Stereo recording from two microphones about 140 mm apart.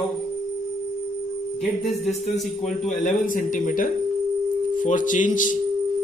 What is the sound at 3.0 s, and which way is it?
Speech, 75° left (ahead or behind).